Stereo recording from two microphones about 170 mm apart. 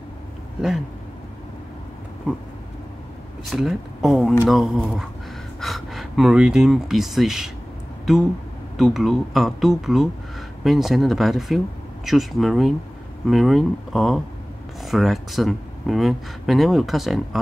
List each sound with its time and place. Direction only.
3.4 s speech: centre (ahead or behind)